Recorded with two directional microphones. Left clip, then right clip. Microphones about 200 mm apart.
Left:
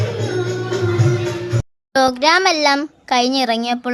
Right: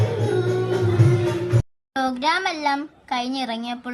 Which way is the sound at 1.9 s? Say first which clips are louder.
Left 8 dB; 50° left (ahead or behind).